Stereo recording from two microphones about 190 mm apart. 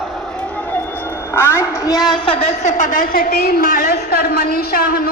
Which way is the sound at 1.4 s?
15° left (ahead or behind).